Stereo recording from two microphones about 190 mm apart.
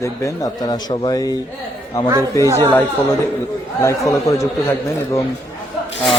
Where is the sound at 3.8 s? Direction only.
15° left (ahead or behind).